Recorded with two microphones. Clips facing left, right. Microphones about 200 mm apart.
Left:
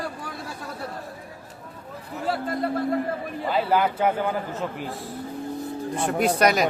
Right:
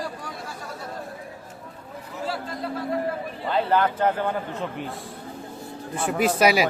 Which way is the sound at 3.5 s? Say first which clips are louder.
Even; 5° left (ahead or behind).